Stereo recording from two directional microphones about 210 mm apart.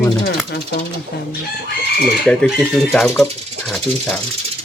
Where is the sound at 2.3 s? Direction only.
Centre (ahead or behind).